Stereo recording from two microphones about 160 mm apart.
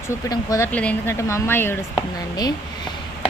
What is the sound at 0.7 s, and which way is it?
Speech, 10° left (ahead or behind).